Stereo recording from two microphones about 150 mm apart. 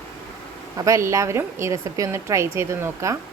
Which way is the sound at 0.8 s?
20° right (ahead or behind).